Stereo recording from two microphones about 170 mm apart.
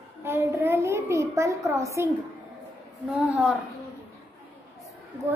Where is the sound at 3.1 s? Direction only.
5° right (ahead or behind).